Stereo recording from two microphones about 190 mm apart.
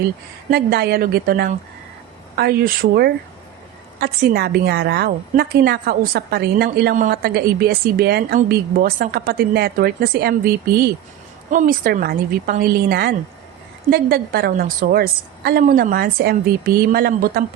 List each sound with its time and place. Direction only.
0.5 s a woman's voice: 55° right (ahead or behind)